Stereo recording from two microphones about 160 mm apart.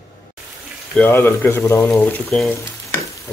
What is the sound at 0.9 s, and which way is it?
Speech, 10° left (ahead or behind).